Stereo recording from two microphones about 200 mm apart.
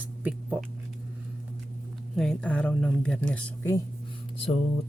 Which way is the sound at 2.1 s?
5° left (ahead or behind).